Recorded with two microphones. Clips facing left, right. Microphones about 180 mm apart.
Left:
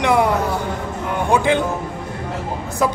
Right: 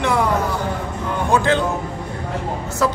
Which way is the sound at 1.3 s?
10° left (ahead or behind).